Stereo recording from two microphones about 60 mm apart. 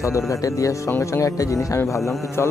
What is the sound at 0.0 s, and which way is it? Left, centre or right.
Speech, left.